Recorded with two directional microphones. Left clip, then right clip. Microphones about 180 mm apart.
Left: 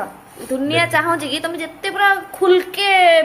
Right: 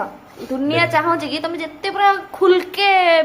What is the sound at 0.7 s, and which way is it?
A woman's voice, 15° right (ahead or behind).